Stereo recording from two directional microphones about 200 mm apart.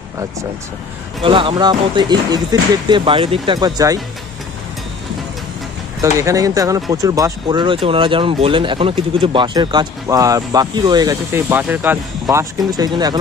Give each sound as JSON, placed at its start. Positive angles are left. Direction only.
{"t": 1.2, "sound": "speech", "side_deg": -25}
{"t": 5.9, "sound": "speech", "side_deg": -15}